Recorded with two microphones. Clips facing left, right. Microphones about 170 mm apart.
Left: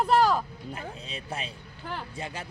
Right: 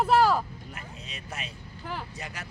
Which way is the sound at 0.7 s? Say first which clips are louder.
Left 7 dB; 30° left (ahead or behind).